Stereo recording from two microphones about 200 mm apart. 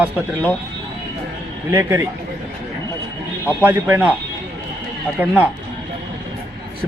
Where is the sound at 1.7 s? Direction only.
15° right (ahead or behind).